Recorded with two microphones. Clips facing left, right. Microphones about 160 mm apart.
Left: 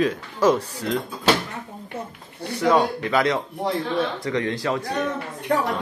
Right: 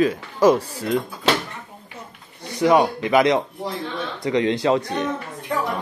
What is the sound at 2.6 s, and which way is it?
Speech, 15° right (ahead or behind).